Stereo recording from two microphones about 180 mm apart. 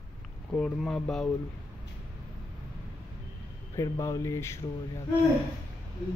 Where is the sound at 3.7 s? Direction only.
15° left (ahead or behind).